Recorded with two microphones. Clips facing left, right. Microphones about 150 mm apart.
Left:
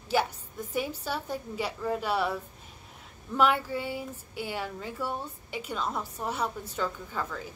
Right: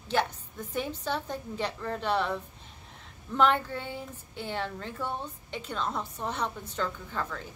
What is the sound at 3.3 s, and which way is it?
A woman's voice, 10° left (ahead or behind).